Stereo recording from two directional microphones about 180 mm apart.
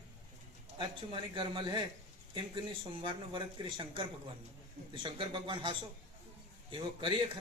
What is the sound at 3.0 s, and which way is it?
A man's voice, 25° right (ahead or behind).